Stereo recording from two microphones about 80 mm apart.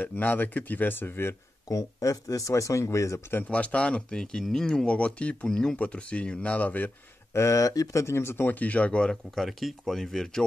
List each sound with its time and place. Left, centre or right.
0.0 s speech: left
1.7 s speech: left
3.3 s speech: centre
7.3 s speech: left; by 10.4 s centre